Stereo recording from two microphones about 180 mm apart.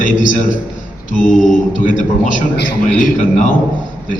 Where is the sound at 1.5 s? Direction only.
45° left (ahead or behind).